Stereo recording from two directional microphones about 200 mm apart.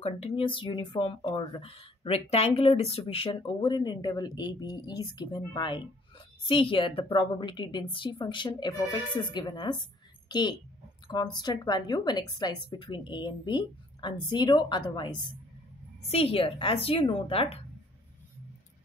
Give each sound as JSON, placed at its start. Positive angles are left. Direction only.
{"t": 0.0, "sound": "a woman's voice", "side_deg": 30}